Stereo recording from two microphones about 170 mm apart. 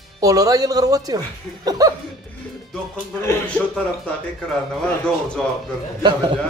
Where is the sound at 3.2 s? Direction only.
10° left (ahead or behind).